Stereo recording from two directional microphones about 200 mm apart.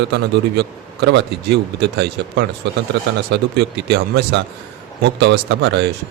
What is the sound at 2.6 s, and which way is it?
A man's voice, 60° right (ahead or behind).